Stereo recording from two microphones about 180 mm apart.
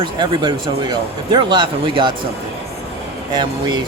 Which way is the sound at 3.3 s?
25° right (ahead or behind).